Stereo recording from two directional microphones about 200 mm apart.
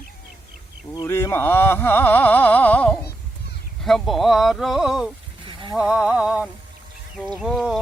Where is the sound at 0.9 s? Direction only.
15° left (ahead or behind).